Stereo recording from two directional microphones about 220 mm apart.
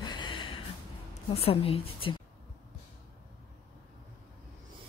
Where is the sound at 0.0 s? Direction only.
20° left (ahead or behind).